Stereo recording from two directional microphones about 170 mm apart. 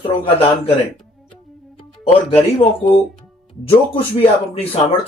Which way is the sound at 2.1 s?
35° left (ahead or behind).